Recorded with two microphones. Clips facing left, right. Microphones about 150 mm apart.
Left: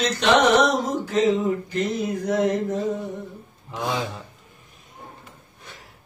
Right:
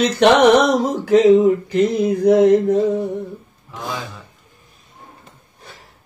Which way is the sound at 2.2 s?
75° right (ahead or behind).